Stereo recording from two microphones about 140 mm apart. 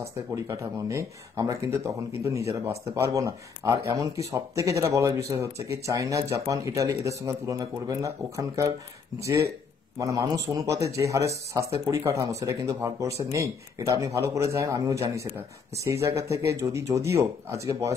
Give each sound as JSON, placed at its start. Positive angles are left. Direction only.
{"t": 0.0, "sound": "speech", "side_deg": -25}
{"t": 9.9, "sound": "speech", "side_deg": -25}